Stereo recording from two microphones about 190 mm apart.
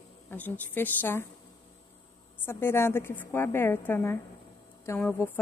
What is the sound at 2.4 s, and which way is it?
A woman's voice, 10° left (ahead or behind).